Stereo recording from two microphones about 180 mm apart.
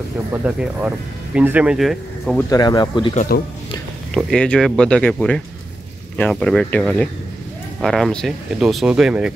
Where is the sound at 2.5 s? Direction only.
25° left (ahead or behind).